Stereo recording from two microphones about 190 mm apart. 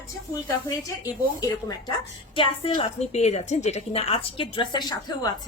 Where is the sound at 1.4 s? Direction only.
20° left (ahead or behind).